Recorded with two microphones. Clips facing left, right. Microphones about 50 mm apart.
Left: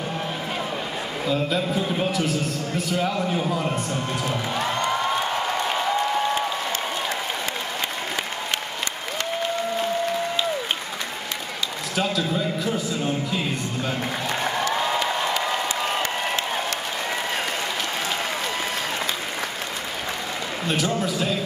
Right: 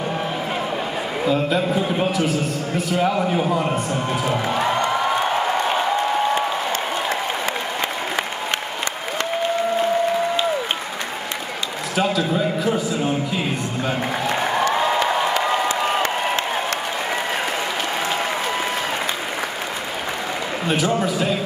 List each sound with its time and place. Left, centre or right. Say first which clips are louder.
1.2 s a man's voice: right 4 dB; centre
2.1 s a man's voice: right 3 dB; centre
3.9 s music: right 4 dB; centre
11.9 s a sound: right 4 dB; centre
12.7 s a man's voice: right 4 dB; centre
14.7 s applause: right 4 dB; centre
20.6 s a man's voice: right 4 dB; centre